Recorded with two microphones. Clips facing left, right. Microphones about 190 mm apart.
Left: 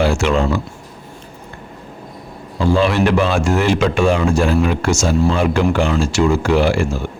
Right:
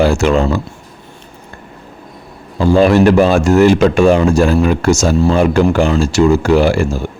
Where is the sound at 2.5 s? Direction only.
45° right (ahead or behind).